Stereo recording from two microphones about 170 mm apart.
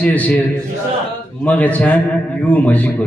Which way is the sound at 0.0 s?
10° left (ahead or behind).